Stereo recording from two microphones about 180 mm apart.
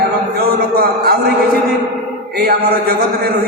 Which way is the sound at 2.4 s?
60° right (ahead or behind).